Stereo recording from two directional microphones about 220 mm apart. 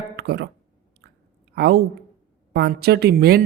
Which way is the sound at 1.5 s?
50° right (ahead or behind).